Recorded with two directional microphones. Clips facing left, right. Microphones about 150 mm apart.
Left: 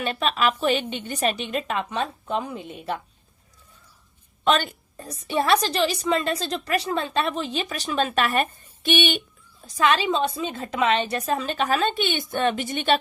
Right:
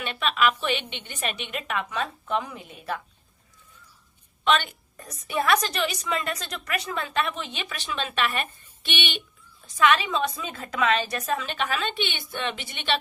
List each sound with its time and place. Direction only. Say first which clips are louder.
0.0 s a woman's voice: left 1 dB; 40° left (ahead or behind)
4.4 s a woman's voice: left 2 dB; 40° left (ahead or behind)